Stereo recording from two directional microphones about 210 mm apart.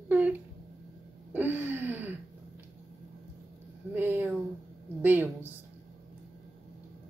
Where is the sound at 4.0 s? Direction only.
15° right (ahead or behind).